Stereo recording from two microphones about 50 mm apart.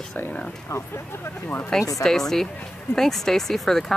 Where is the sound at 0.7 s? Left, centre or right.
Left.